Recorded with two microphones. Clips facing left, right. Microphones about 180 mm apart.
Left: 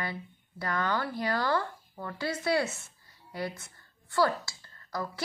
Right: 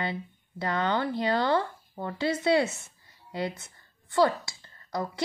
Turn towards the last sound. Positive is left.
turn(degrees=-20)  # may be behind; listen again after turning